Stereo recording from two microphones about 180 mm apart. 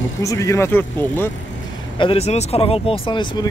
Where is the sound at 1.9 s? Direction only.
30° left (ahead or behind).